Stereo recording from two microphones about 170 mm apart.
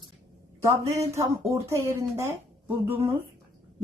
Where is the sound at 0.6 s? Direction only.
20° right (ahead or behind).